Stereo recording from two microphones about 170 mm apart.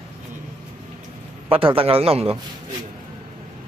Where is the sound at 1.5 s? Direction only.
30° right (ahead or behind).